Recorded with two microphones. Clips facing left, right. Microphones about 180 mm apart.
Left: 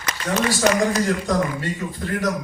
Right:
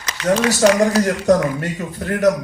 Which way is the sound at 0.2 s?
80° right.